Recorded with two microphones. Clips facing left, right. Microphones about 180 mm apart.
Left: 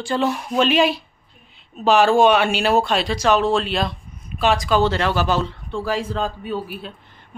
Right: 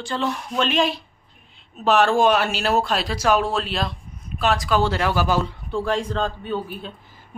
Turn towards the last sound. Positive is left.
turn(degrees=5)  # may be behind; listen again after turning